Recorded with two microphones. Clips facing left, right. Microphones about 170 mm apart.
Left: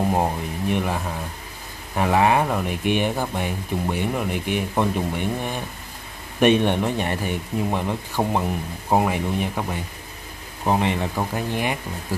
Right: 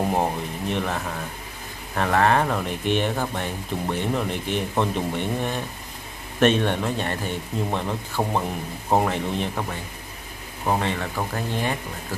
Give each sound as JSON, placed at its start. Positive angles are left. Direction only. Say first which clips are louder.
{"t": 0.1, "sound": "speech", "louder": "left 1 dB", "side_deg": 10}